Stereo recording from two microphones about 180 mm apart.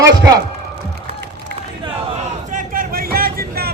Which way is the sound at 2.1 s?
45° right (ahead or behind).